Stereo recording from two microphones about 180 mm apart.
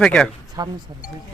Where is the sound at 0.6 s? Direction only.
20° right (ahead or behind).